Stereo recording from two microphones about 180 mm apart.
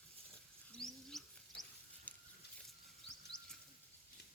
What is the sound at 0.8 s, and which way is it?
Bird, centre (ahead or behind).